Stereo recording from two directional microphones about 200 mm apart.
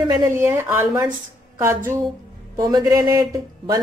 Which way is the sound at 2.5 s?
20° right (ahead or behind).